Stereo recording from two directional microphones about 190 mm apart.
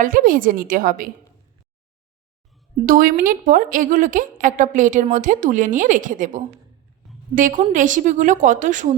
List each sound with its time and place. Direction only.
0.0 s a woman's voice: 45° right (ahead or behind)
2.8 s a woman's voice: 50° right (ahead or behind)